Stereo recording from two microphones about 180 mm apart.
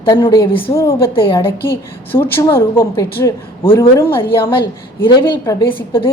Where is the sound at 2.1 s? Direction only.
15° left (ahead or behind).